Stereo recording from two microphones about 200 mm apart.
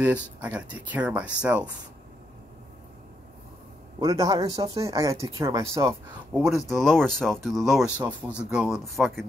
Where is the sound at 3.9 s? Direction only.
15° right (ahead or behind).